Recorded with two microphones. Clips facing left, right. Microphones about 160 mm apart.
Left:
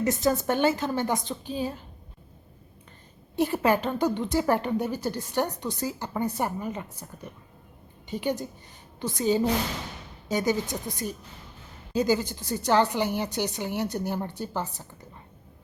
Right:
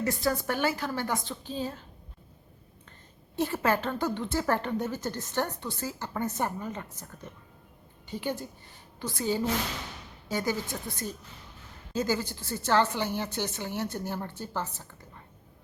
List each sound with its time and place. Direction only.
0.0 s a woman's voice: 20° left (ahead or behind)
3.3 s a woman's voice: 15° left (ahead or behind)